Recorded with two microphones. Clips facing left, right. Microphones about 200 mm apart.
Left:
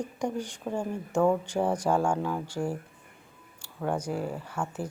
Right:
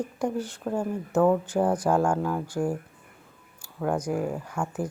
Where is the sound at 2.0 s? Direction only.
5° right (ahead or behind).